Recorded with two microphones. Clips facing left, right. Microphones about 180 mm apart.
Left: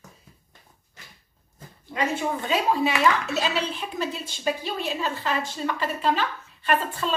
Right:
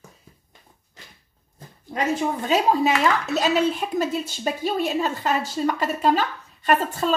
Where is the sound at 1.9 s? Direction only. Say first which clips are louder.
Right 3 dB; 45° right (ahead or behind).